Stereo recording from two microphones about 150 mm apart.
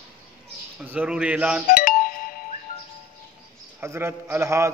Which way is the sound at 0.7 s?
10° right (ahead or behind).